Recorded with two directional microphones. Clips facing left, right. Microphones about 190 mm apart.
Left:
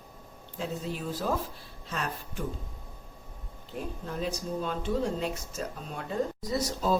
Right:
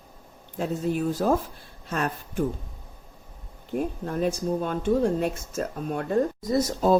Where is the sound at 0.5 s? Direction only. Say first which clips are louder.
Right 8 dB; 50° right (ahead or behind).